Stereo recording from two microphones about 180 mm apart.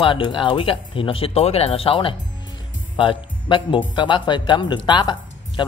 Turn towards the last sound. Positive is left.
turn(degrees=25)  # may be behind; listen again after turning